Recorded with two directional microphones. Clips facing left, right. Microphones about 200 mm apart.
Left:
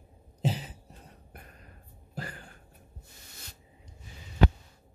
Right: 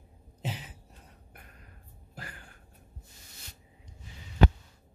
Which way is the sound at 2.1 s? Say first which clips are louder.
Left 6 dB; 35° left (ahead or behind).